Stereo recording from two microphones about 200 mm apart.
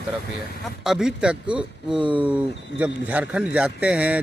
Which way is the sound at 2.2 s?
5° right (ahead or behind).